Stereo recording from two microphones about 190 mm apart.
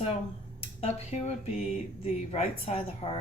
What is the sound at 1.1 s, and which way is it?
Speech, 35° left (ahead or behind).